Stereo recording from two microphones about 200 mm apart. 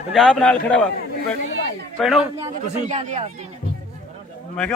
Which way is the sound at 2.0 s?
Centre (ahead or behind).